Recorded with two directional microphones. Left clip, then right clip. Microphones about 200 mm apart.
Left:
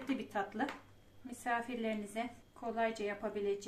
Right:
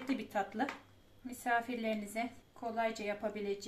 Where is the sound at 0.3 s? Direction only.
25° right (ahead or behind).